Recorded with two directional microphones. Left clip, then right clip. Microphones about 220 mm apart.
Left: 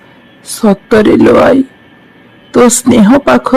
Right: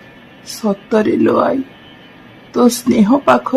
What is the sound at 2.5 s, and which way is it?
Speech, 35° left (ahead or behind).